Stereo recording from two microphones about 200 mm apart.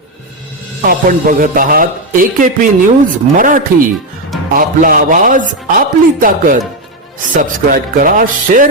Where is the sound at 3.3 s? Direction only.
40° right (ahead or behind).